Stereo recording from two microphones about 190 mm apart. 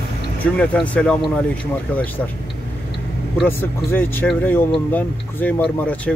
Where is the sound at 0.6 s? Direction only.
5° left (ahead or behind).